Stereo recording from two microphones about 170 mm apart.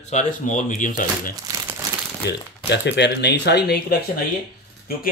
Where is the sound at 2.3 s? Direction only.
85° left; by 4.2 s 65° left (ahead or behind).